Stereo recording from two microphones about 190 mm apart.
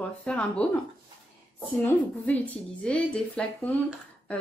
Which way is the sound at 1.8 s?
10° left (ahead or behind).